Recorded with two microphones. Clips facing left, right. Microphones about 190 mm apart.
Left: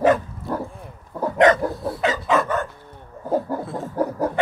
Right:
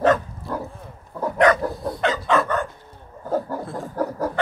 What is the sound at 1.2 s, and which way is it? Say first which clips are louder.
Dog: left 2 dB; 25° left (ahead or behind).